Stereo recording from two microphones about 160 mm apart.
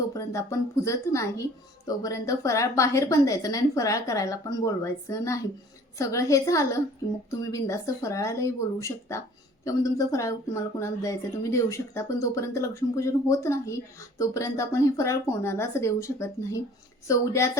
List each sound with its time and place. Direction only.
0.1 s speech: 20° left (ahead or behind)